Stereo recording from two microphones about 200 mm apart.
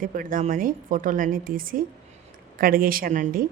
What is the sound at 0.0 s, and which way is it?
Speech, 45° right (ahead or behind).